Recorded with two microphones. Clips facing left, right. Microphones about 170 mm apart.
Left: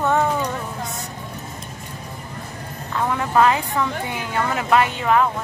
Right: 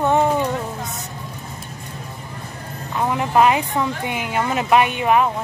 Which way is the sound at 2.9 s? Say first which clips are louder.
Right 1 dB; 20° right (ahead or behind).